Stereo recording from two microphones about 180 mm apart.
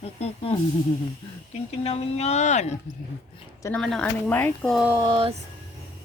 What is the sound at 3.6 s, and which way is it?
Speech, 5° left (ahead or behind).